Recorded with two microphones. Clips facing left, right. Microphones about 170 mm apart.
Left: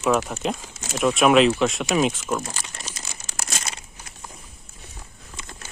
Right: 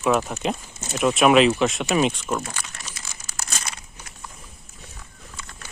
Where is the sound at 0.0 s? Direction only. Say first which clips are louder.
Even; 5° right (ahead or behind).